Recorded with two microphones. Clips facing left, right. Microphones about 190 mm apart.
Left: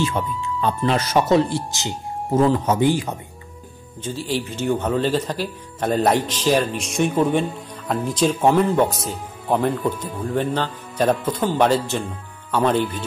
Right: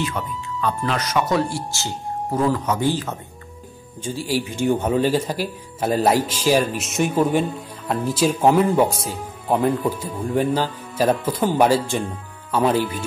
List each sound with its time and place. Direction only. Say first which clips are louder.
0.0 s speech: left 3 dB; 25° left (ahead or behind)
2.9 s speech: left 3 dB; 15° left (ahead or behind)
4.0 s speech: right 1 dB; 10° right (ahead or behind)